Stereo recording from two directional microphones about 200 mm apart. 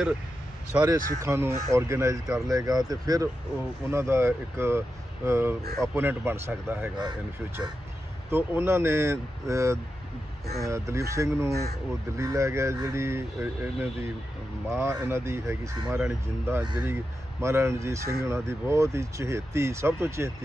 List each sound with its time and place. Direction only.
0.7 s speech: 15° right (ahead or behind)
8.3 s speech: 10° right (ahead or behind)